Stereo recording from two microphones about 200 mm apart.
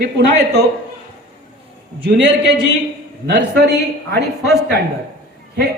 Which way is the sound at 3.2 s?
60° right (ahead or behind).